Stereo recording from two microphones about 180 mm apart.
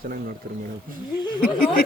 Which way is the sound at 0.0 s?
55° right (ahead or behind).